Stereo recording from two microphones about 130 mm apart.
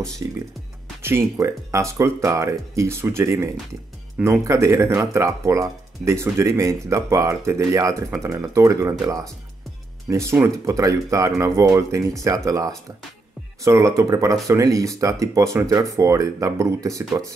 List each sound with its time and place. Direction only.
0.2 s speech: 20° right (ahead or behind)